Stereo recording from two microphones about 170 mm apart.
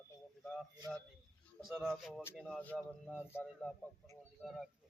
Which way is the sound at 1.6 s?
Centre (ahead or behind).